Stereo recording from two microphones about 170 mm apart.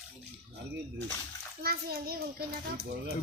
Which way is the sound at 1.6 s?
65° right (ahead or behind).